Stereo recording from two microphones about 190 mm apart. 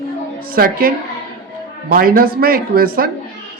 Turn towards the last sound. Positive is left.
turn(degrees=-50)  # may be behind; listen again after turning